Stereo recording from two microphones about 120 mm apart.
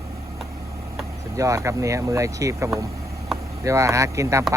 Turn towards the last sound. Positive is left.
turn(degrees=-25)  # may be behind; listen again after turning